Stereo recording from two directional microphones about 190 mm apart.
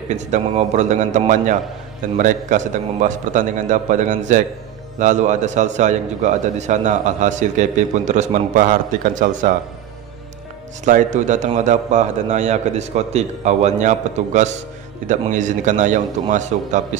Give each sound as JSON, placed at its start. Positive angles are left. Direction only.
{"t": 0.1, "sound": "a man's voice", "side_deg": -40}
{"t": 10.9, "sound": "a man's voice", "side_deg": -40}